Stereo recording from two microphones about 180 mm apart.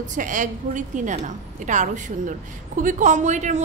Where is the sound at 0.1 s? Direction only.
45° right (ahead or behind).